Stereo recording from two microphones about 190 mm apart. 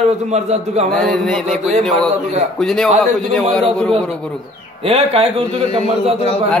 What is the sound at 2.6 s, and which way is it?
Speech, centre (ahead or behind).